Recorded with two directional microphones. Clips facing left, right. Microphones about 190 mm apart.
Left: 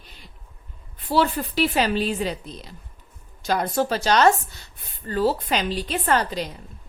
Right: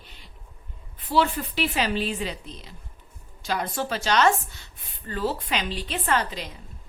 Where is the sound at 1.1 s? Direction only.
40° left (ahead or behind).